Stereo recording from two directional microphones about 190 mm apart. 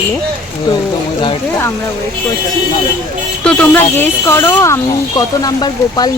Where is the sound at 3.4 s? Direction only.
10° left (ahead or behind).